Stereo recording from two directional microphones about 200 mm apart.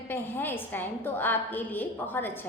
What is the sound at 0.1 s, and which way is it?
A woman's voice, 10° left (ahead or behind).